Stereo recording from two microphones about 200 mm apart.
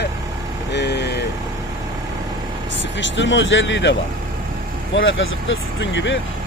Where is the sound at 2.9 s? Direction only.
65° left (ahead or behind).